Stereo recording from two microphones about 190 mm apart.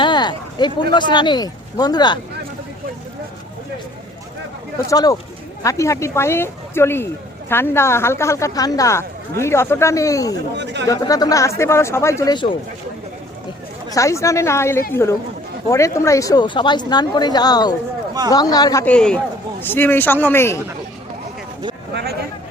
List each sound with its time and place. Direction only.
0.0 s speech: 25° left (ahead or behind)
4.9 s a woman's voice: 20° left (ahead or behind)
10.5 s speech: 65° right (ahead or behind)
10.8 s speech: 20° left (ahead or behind)
13.9 s a woman's voice: 15° left (ahead or behind)